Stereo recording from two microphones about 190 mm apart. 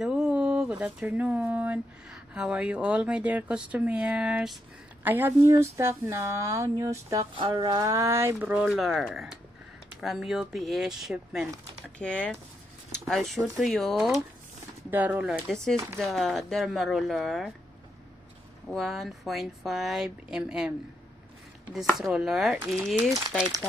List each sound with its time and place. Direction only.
0.0 s speech: 5° right (ahead or behind)
15.7 s speech: 15° right (ahead or behind)
16.0 s speech: centre (ahead or behind)
18.7 s speech: centre (ahead or behind)
22.0 s speech: centre (ahead or behind)